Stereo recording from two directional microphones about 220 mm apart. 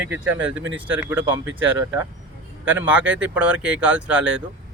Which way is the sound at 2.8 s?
5° right (ahead or behind).